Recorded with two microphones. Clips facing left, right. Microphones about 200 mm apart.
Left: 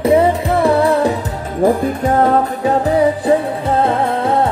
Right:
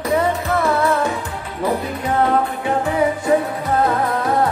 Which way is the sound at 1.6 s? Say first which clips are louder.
Left 7 dB; 45° left (ahead or behind).